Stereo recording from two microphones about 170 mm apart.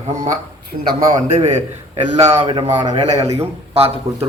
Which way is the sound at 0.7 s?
40° right (ahead or behind).